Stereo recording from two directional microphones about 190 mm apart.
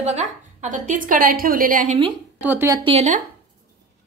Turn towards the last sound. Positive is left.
turn(degrees=-30)  # may be behind; listen again after turning